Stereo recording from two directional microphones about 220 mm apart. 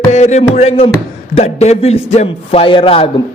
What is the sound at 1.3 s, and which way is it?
Music, 30° left (ahead or behind).